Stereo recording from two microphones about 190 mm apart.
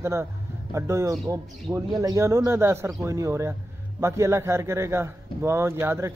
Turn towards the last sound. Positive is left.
turn(degrees=-15)  # may be behind; listen again after turning